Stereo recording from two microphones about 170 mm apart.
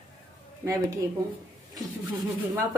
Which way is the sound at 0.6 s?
20° right (ahead or behind).